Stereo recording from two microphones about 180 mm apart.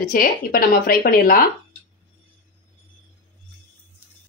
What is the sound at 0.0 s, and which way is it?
Frying, 50° left (ahead or behind).